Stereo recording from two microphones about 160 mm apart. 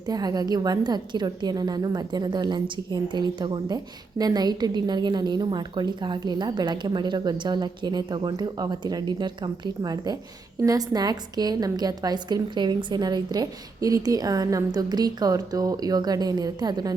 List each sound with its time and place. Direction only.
0.0 s a woman's voice: 25° right (ahead or behind)